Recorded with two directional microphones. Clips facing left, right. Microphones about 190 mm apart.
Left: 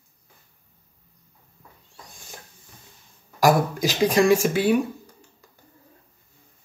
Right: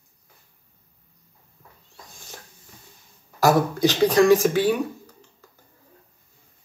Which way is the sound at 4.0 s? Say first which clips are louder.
Right 2 dB; 10° left (ahead or behind).